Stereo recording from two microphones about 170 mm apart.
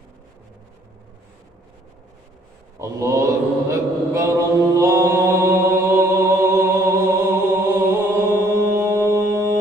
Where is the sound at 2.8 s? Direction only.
20° right (ahead or behind).